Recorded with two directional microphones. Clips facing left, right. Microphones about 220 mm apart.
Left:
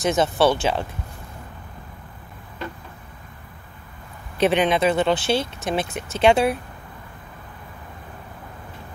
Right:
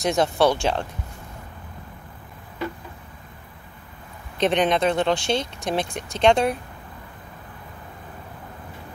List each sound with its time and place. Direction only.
0.0 s speech: centre (ahead or behind)
4.4 s speech: 5° left (ahead or behind)